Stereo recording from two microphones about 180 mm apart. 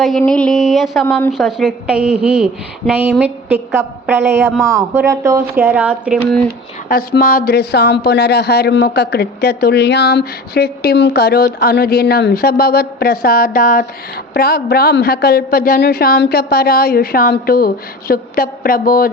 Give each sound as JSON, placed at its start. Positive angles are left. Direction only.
{"t": 0.0, "sound": "a woman's voice", "side_deg": 0}
{"t": 6.8, "sound": "speech", "side_deg": 55}
{"t": 14.3, "sound": "a woman's voice", "side_deg": 60}